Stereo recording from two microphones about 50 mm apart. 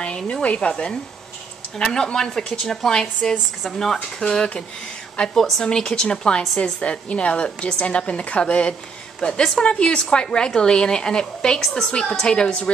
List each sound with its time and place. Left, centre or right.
0.0 s a woman's voice: left